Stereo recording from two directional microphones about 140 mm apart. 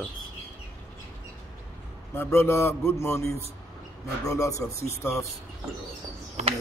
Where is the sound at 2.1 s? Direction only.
20° left (ahead or behind).